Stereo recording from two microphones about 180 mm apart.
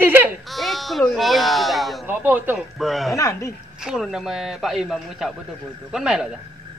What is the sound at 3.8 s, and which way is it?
Screaming, centre (ahead or behind).